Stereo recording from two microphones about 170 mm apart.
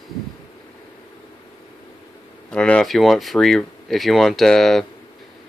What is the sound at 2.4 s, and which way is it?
Speech, 5° left (ahead or behind).